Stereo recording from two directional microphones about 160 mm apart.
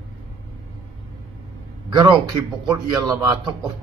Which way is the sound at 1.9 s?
25° right (ahead or behind).